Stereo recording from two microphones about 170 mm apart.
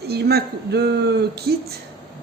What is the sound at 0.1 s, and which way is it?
Speech, 70° right (ahead or behind).